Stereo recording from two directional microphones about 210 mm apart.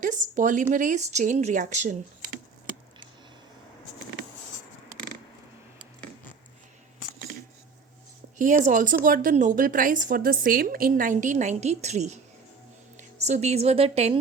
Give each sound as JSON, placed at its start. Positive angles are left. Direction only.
{"t": 0.0, "sound": "a woman's voice", "side_deg": -35}
{"t": 8.4, "sound": "a woman's voice", "side_deg": -35}